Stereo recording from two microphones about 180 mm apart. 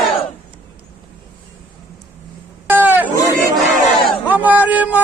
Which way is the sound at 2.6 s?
10° right (ahead or behind).